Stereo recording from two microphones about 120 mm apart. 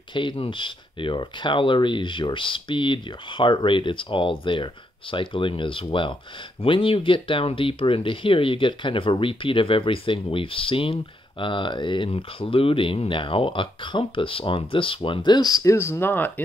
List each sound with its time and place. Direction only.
0.1 s speech: 40° left (ahead or behind); by 16.3 s 20° left (ahead or behind)